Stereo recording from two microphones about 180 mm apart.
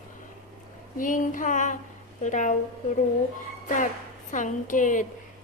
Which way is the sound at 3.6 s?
45° left (ahead or behind).